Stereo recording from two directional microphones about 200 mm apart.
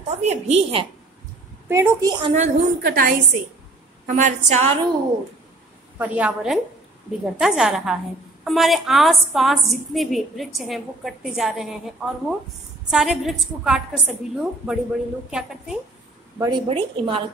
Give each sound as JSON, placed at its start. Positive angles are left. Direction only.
{"t": 0.1, "sound": "a woman's voice", "side_deg": -35}
{"t": 1.7, "sound": "a woman's voice", "side_deg": -15}
{"t": 2.3, "sound": "a woman's voice", "side_deg": -35}
{"t": 2.9, "sound": "a woman's voice", "side_deg": -50}
{"t": 4.0, "sound": "a woman's voice", "side_deg": -40}
{"t": 5.9, "sound": "a woman's voice", "side_deg": -5}
{"t": 16.3, "sound": "a woman's voice", "side_deg": -20}